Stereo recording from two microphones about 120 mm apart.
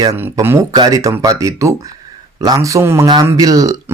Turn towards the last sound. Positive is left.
turn(degrees=-30)  # may be behind; listen again after turning